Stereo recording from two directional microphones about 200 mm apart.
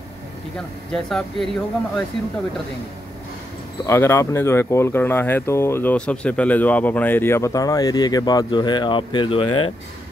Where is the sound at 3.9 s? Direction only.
15° left (ahead or behind).